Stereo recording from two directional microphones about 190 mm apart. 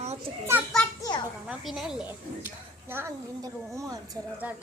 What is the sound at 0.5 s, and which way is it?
A woman's voice, 10° right (ahead or behind).